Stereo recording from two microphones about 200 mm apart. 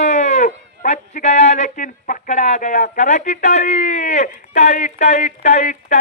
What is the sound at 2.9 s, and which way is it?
Speech, 35° left (ahead or behind).